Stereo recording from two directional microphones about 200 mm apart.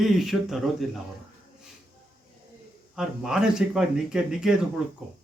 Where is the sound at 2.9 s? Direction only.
5° right (ahead or behind).